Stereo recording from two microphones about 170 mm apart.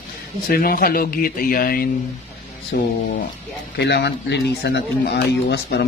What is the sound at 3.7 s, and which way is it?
Speech, 85° left.